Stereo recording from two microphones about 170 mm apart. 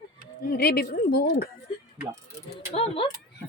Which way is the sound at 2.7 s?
35° left (ahead or behind).